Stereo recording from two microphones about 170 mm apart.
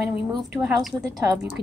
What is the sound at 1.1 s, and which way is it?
Speech, 20° right (ahead or behind).